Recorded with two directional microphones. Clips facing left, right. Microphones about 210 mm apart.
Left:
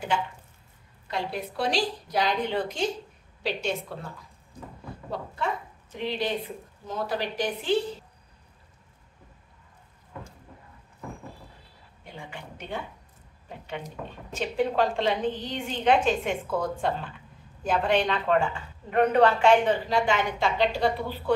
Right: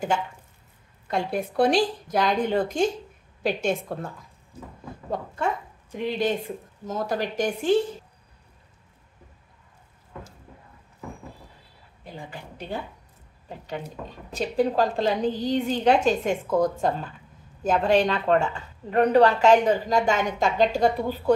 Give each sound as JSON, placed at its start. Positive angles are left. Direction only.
{"t": 1.0, "sound": "a woman's voice", "side_deg": -50}
{"t": 5.1, "sound": "a woman's voice", "side_deg": -50}
{"t": 6.9, "sound": "a woman's voice", "side_deg": -45}
{"t": 12.0, "sound": "a woman's voice", "side_deg": -35}
{"t": 14.3, "sound": "a woman's voice", "side_deg": -40}